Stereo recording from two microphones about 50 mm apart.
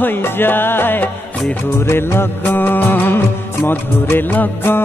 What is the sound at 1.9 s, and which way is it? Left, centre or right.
Music, left.